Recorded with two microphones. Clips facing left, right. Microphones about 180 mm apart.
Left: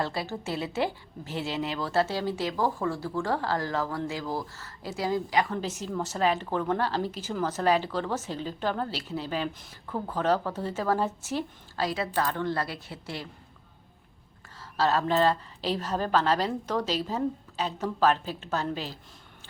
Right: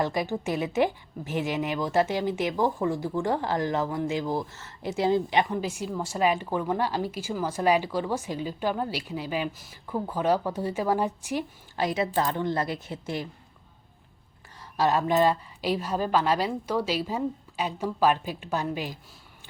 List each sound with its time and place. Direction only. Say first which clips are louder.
0.0 s speech: right 4 dB; 15° right (ahead or behind)
5.5 s speech: right 1 dB; 10° right (ahead or behind)
14.8 s speech: right 2 dB; 15° right (ahead or behind)